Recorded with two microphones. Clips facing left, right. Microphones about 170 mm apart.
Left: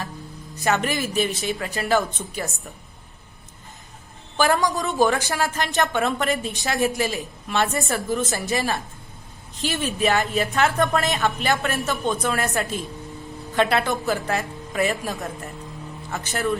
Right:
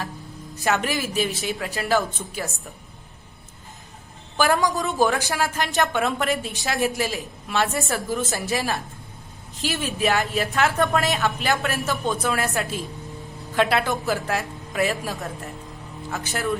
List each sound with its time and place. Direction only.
0.6 s a woman's voice: 5° right (ahead or behind)
4.4 s a woman's voice: centre (ahead or behind)